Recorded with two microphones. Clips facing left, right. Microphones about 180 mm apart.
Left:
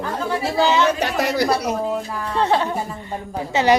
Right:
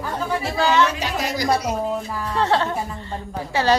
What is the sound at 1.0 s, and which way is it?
Speech, 65° left (ahead or behind).